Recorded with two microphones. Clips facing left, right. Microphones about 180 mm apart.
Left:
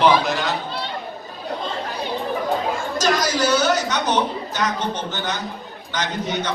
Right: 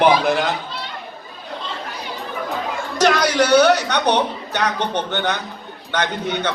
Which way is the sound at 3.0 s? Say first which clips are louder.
Right 5 dB; 65° right (ahead or behind).